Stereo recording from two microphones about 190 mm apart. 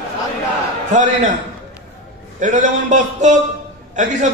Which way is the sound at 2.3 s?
40° right (ahead or behind).